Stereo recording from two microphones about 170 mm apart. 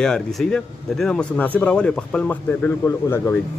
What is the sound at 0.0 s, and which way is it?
A man's voice, centre (ahead or behind).